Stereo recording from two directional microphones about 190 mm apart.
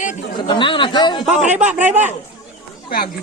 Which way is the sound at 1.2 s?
5° right (ahead or behind).